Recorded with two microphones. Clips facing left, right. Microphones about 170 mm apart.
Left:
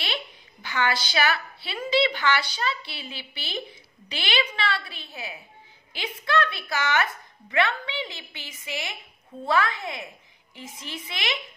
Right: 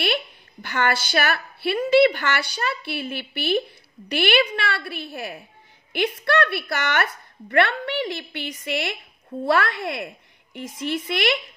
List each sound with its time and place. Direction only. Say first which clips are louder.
0.0 s a woman's voice: right 8 dB; 55° right (ahead or behind)